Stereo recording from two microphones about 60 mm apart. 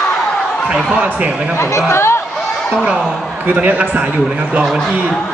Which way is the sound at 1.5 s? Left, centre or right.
Left.